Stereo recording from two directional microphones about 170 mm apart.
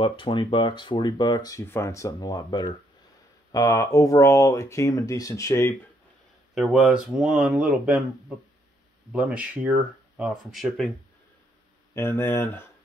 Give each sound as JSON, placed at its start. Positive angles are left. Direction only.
{"t": 0.0, "sound": "speech", "side_deg": 30}
{"t": 6.5, "sound": "speech", "side_deg": 0}
{"t": 9.1, "sound": "speech", "side_deg": -5}
{"t": 11.9, "sound": "speech", "side_deg": 15}